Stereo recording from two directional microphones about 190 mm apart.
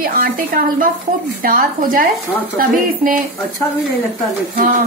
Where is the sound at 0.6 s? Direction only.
45° right (ahead or behind).